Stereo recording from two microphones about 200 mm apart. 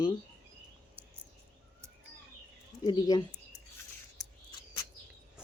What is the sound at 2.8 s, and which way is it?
Speech, 20° left (ahead or behind).